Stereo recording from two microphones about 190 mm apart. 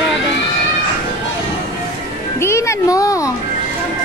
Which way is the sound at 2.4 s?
15° left (ahead or behind).